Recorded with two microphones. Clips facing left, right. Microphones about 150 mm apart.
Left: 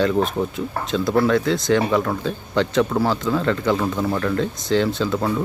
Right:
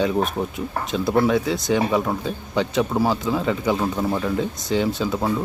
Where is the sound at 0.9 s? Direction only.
10° right (ahead or behind).